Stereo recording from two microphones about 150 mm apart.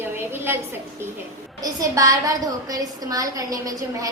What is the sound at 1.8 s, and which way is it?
A woman's voice, 20° right (ahead or behind).